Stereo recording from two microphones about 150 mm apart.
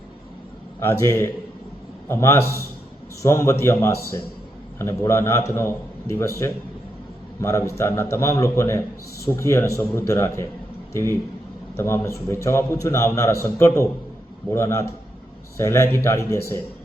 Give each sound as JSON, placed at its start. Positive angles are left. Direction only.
{"t": 0.8, "sound": "a man's voice", "side_deg": 15}